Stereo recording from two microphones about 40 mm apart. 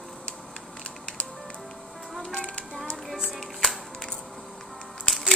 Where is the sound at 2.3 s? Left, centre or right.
Left.